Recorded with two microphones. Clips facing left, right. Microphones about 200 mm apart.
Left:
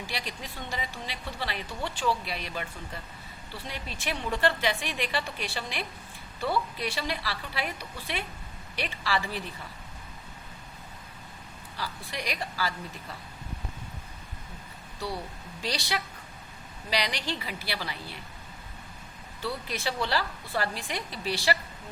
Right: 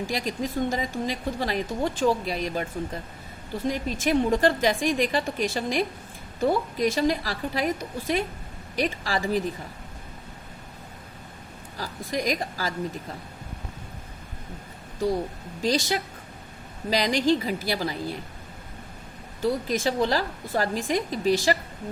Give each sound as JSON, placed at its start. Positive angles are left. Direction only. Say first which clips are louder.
{"t": 0.1, "sound": "speech", "louder": "right 10 dB", "side_deg": -45}
{"t": 11.8, "sound": "speech", "louder": "right 7 dB", "side_deg": -45}
{"t": 14.9, "sound": "speech", "louder": "right 10 dB", "side_deg": -45}
{"t": 19.4, "sound": "speech", "louder": "right 9 dB", "side_deg": -45}